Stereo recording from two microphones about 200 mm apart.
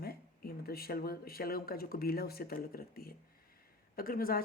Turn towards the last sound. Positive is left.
turn(degrees=45)  # may be behind; listen again after turning